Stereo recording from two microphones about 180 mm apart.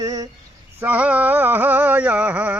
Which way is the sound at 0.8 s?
10° right (ahead or behind).